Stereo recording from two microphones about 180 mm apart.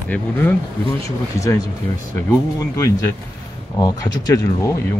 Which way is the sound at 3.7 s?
20° left (ahead or behind).